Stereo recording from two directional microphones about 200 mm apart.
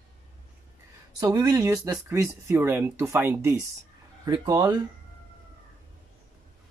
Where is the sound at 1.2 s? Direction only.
15° right (ahead or behind).